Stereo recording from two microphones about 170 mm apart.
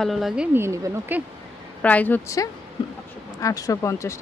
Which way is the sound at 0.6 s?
15° right (ahead or behind).